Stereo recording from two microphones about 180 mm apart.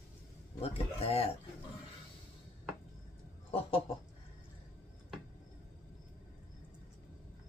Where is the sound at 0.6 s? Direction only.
35° left (ahead or behind).